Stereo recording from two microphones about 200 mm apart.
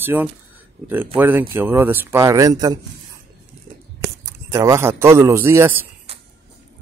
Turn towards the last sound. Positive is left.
turn(degrees=-10)  # may be behind; listen again after turning